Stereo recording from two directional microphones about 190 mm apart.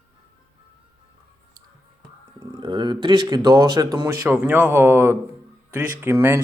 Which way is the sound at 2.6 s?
25° right (ahead or behind).